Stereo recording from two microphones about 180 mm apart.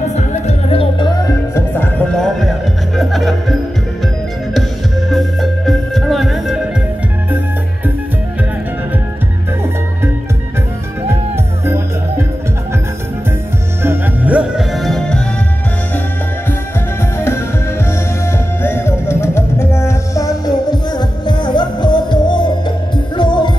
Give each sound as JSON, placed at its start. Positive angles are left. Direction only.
{"t": 0.1, "sound": "music", "side_deg": 40}
{"t": 2.0, "sound": "music", "side_deg": 5}
{"t": 5.1, "sound": "music", "side_deg": 0}
{"t": 11.6, "sound": "music", "side_deg": -15}
{"t": 13.8, "sound": "music", "side_deg": -10}
{"t": 17.2, "sound": "music", "side_deg": 15}